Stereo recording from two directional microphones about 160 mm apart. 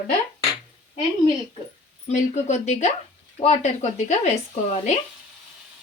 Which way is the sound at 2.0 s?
45° left (ahead or behind).